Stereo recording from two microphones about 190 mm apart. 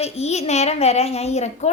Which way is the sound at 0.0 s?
35° left (ahead or behind).